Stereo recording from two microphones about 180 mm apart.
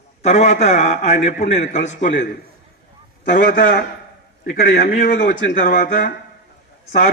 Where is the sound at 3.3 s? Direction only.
50° left (ahead or behind).